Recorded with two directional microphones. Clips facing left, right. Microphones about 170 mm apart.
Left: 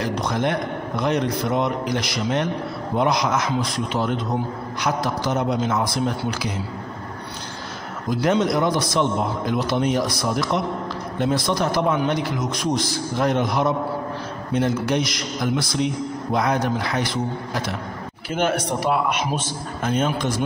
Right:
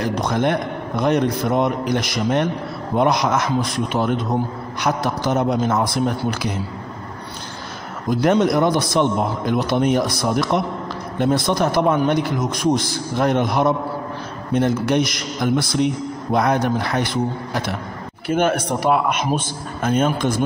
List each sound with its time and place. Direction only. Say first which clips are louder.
0.0 s a man's voice: right 3 dB; 50° right (ahead or behind)
8.1 s a man's voice: right 3 dB; 50° right (ahead or behind)
18.3 s a man's voice: right 3 dB; 50° right (ahead or behind)